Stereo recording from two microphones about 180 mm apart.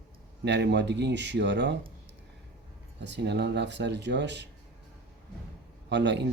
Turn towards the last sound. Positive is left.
turn(degrees=-75)  # may be behind; listen again after turning